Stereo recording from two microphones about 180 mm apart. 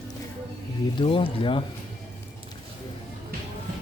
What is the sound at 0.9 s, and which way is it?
Speech, 30° left (ahead or behind).